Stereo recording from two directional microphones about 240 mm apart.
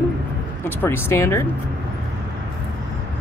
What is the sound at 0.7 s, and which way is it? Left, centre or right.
Speech, centre.